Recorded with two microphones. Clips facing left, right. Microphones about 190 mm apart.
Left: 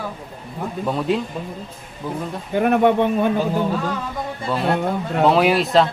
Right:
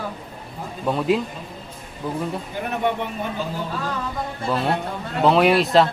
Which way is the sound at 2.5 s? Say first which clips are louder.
Left 11 dB; 60° left (ahead or behind).